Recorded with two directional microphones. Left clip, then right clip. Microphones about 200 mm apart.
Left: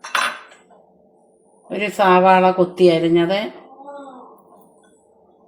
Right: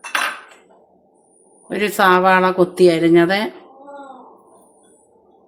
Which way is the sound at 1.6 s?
30° right (ahead or behind).